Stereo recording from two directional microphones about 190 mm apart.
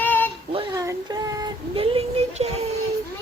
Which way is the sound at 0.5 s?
30° right (ahead or behind).